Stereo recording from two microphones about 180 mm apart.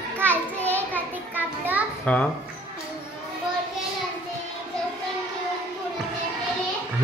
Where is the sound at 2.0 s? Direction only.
5° left (ahead or behind).